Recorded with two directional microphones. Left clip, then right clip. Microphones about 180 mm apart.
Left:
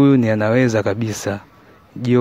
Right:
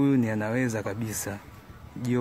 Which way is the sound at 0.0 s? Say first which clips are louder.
Left 11 dB; 35° left (ahead or behind).